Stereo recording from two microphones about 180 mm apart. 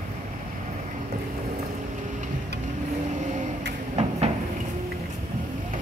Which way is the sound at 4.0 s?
35° right (ahead or behind).